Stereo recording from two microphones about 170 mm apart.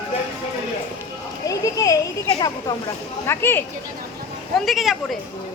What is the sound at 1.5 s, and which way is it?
Speech, 20° left (ahead or behind).